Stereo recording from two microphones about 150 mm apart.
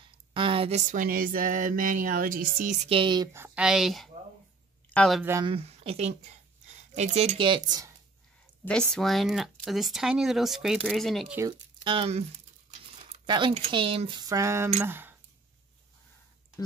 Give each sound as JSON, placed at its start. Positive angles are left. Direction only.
{"t": 0.0, "sound": "a sound", "side_deg": -35}
{"t": 0.9, "sound": "speech", "side_deg": -70}
{"t": 2.9, "sound": "speech", "side_deg": -35}
{"t": 3.3, "sound": "speech", "side_deg": -10}
{"t": 5.4, "sound": "speech", "side_deg": -40}
{"t": 8.6, "sound": "speech", "side_deg": 5}
{"t": 11.8, "sound": "speech", "side_deg": -35}